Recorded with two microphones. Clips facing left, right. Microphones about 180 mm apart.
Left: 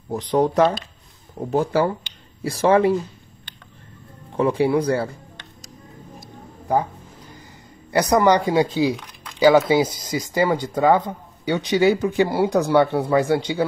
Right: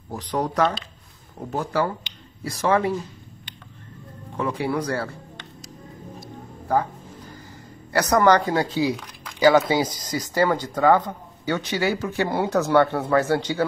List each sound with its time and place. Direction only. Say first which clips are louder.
0.1 s speech: left 7 dB; 25° left (ahead or behind)
4.4 s speech: left 6 dB; 30° left (ahead or behind)
7.9 s speech: left 1 dB; 10° left (ahead or behind)